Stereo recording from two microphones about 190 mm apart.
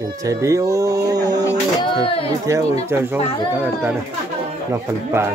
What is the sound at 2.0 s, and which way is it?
Speech, 30° left (ahead or behind).